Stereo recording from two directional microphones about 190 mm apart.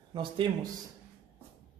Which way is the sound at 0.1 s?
25° right (ahead or behind).